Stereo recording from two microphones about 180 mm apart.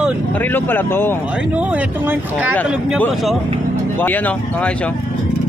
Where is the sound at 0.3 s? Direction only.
10° left (ahead or behind).